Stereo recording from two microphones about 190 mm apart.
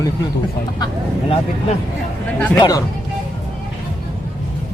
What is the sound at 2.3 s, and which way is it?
Speech, 10° left (ahead or behind).